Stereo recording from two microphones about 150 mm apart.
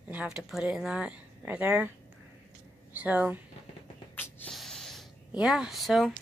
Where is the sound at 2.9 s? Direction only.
10° right (ahead or behind).